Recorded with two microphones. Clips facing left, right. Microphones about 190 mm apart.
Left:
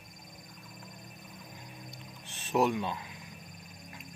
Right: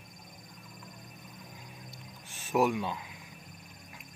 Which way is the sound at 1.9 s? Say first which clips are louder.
Left 1 dB; 10° right (ahead or behind).